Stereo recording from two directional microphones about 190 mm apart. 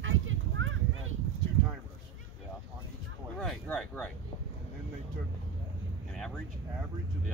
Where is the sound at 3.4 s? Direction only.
5° left (ahead or behind).